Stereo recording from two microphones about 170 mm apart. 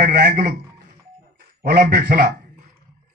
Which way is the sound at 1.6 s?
65° right (ahead or behind).